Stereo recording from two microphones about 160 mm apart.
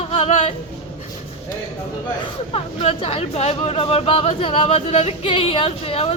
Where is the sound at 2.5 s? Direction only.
35° left (ahead or behind).